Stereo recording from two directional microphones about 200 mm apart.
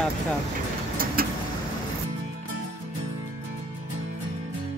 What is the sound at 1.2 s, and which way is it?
Vehicle, 50° right (ahead or behind).